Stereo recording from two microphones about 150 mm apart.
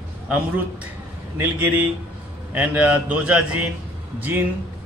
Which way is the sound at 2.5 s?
10° right (ahead or behind).